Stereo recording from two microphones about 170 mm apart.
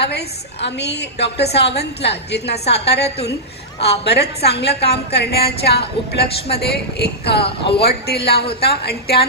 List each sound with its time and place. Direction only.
0.0 s a woman's voice: 80° left